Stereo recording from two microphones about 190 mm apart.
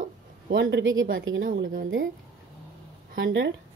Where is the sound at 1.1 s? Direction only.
90° right.